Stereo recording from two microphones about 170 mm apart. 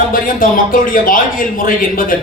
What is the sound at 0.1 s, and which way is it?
Speech, 55° left (ahead or behind).